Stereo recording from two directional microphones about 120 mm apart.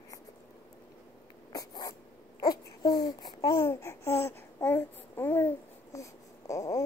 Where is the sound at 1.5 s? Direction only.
30° left (ahead or behind).